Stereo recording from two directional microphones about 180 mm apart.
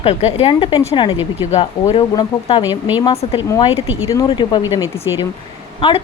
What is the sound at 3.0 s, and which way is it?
Speech, 30° left (ahead or behind).